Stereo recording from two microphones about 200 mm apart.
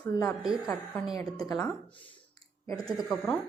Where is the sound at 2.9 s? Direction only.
Centre (ahead or behind).